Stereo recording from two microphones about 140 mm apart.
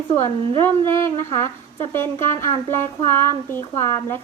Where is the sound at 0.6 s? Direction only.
20° left (ahead or behind).